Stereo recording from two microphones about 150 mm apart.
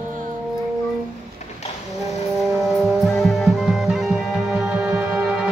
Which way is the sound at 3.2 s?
Centre (ahead or behind).